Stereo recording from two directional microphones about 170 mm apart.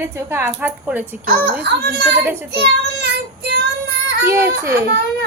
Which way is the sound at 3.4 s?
75° right (ahead or behind).